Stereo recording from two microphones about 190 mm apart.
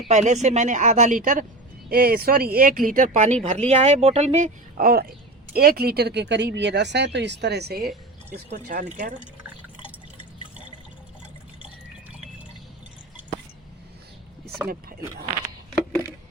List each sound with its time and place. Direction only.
0.1 s speech: 40° right (ahead or behind); by 7.9 s 55° right (ahead or behind)
8.4 s speech: 40° right (ahead or behind)